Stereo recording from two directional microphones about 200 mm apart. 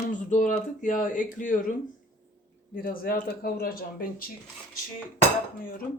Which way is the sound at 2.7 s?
45° left (ahead or behind).